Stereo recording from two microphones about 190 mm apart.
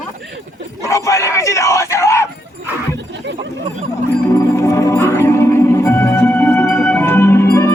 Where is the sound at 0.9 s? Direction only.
15° left (ahead or behind).